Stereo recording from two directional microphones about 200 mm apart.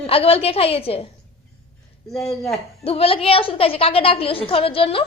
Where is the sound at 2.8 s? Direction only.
30° left (ahead or behind).